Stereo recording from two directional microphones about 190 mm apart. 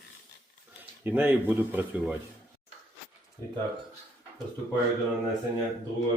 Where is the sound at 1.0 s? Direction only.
10° right (ahead or behind).